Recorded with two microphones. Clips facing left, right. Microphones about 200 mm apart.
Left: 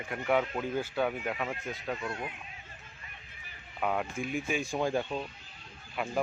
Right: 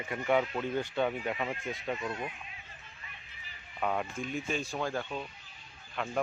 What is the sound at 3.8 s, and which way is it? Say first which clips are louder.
Speech: left 1 dB; 5° left (ahead or behind).